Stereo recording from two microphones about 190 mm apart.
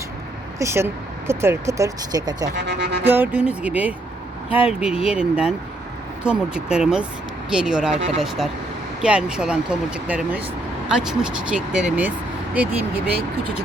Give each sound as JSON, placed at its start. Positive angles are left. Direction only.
{"t": 0.6, "sound": "speech", "side_deg": -15}
{"t": 2.6, "sound": "speech", "side_deg": -60}
{"t": 3.0, "sound": "speech", "side_deg": -10}